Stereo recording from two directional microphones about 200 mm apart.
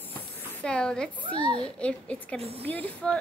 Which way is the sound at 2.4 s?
30° right (ahead or behind).